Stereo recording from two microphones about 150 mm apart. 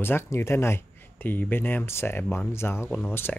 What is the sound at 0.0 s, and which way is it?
Speech, 15° left (ahead or behind).